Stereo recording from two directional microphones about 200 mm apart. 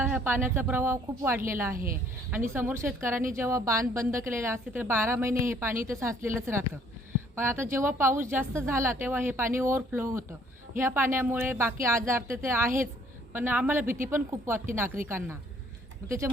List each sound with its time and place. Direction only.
0.0 s a woman's voice: 10° right (ahead or behind)
1.7 s a woman's voice: 45° right (ahead or behind)
2.5 s a woman's voice: 10° right (ahead or behind)